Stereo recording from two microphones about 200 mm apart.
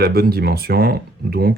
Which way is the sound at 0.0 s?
50° right (ahead or behind).